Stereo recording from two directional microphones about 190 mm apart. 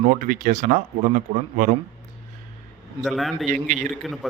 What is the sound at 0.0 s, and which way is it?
Speech, 45° right (ahead or behind).